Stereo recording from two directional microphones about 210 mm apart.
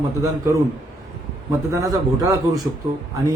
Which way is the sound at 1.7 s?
15° right (ahead or behind).